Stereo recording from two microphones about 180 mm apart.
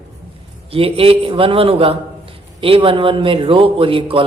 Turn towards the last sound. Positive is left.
turn(degrees=-30)  # may be behind; listen again after turning